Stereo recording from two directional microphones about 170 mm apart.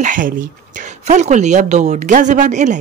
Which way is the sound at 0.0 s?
50° right (ahead or behind).